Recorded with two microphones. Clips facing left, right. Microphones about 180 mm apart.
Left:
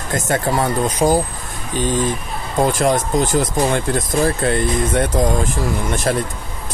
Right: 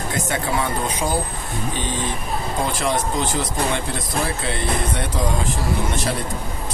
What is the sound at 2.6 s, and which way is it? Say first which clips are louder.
Speech: left 8 dB; 45° left (ahead or behind).